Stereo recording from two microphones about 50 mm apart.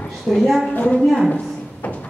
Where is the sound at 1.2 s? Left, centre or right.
Left.